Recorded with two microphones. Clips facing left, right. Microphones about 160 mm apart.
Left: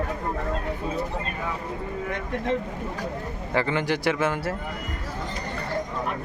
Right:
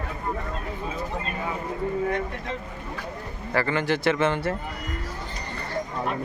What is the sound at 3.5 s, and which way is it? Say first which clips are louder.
Speech: even; 15° left (ahead or behind).